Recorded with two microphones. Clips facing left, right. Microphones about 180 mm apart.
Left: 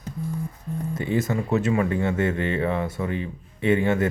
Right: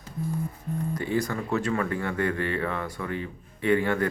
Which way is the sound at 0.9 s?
20° left (ahead or behind).